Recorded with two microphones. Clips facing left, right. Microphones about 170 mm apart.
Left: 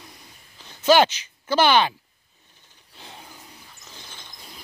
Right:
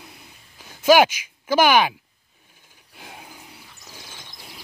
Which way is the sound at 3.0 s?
10° right (ahead or behind).